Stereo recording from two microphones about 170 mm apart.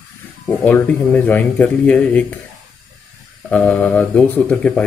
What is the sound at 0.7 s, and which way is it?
Speech, 10° left (ahead or behind).